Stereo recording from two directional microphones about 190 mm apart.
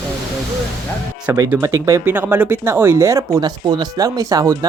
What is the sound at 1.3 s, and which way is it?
Speech, 15° right (ahead or behind).